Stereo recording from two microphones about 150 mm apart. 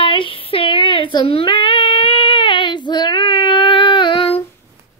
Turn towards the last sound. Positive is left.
turn(degrees=35)  # may be behind; listen again after turning